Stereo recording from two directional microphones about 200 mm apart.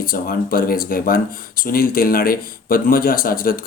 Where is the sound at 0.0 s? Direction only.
45° left (ahead or behind).